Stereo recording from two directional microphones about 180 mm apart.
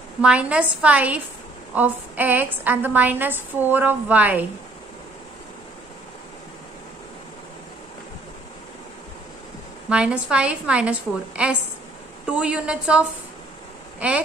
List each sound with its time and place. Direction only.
0.2 s a woman's voice: 5° right (ahead or behind)
9.8 s a woman's voice: 5° right (ahead or behind)
13.9 s a sound: 5° right (ahead or behind)